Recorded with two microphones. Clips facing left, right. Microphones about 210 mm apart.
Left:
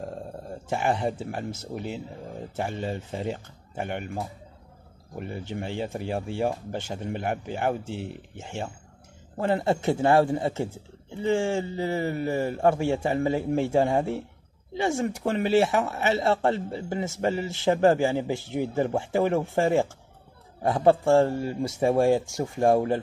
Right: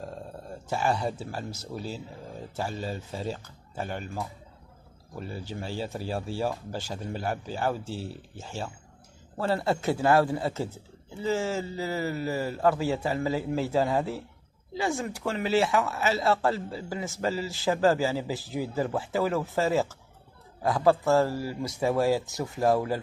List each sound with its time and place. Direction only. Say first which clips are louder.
0.7 s speech: left 2 dB; 20° left (ahead or behind)